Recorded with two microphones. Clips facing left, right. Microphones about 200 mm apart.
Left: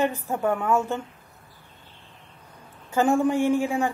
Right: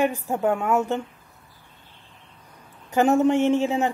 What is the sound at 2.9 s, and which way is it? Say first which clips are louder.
Speech: right 3 dB; 20° right (ahead or behind).